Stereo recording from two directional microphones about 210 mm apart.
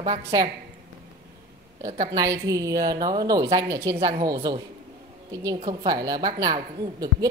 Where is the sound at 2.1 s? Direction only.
15° right (ahead or behind).